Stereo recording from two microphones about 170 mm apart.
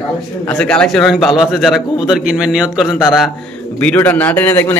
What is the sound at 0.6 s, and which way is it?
A man's voice, 5° left (ahead or behind).